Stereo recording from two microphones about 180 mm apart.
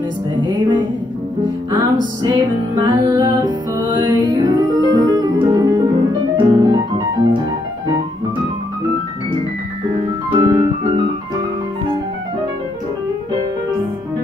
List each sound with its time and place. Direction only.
0.4 s music: 25° right (ahead or behind)
2.2 s music: 25° right (ahead or behind)
10.3 s piano: 25° right (ahead or behind)